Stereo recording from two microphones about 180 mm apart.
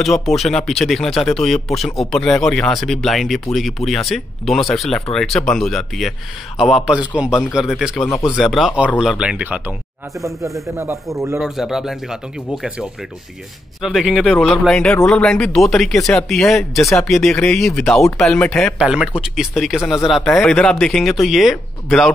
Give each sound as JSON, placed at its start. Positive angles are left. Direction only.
{"t": 0.0, "sound": "speech", "side_deg": 0}
{"t": 7.5, "sound": "speech", "side_deg": 0}
{"t": 8.1, "sound": "speech", "side_deg": 15}
{"t": 8.4, "sound": "speech", "side_deg": 0}
{"t": 11.3, "sound": "speech", "side_deg": 0}
{"t": 13.7, "sound": "speech", "side_deg": 0}